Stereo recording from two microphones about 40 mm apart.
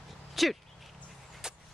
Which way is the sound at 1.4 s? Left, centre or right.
Centre.